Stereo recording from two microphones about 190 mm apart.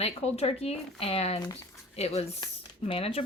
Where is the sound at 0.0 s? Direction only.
30° left (ahead or behind).